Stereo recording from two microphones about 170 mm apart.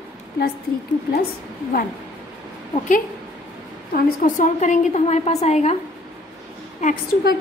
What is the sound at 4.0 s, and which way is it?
A woman's voice, 50° left (ahead or behind).